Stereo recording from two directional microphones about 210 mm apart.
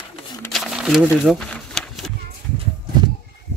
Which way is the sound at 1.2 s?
Centre (ahead or behind).